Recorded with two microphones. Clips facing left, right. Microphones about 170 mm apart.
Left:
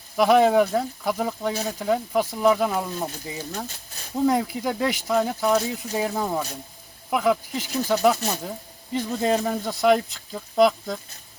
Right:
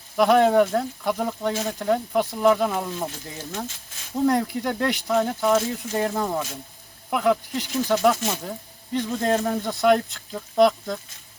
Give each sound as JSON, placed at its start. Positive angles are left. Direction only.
{"t": 0.2, "sound": "speech", "side_deg": 5}
{"t": 3.7, "sound": "speech", "side_deg": 40}
{"t": 4.3, "sound": "speech", "side_deg": 5}